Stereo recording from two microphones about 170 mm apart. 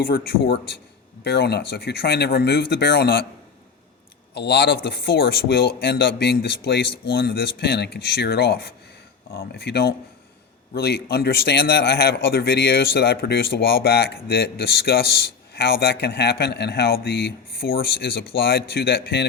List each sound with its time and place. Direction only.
0.1 s a man's voice: 70° left (ahead or behind)
1.2 s a man's voice: 80° left
4.4 s a man's voice: 75° left (ahead or behind)